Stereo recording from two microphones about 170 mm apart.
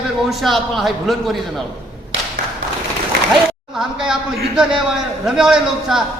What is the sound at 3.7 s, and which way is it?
Speech, 5° right (ahead or behind).